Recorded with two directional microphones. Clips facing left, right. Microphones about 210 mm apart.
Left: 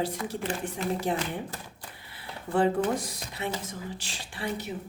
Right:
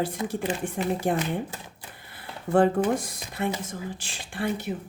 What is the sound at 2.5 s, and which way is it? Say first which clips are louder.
A woman's voice: right 4 dB; 50° right (ahead or behind).